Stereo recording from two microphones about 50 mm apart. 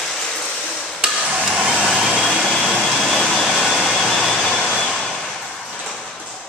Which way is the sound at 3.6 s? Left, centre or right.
Centre.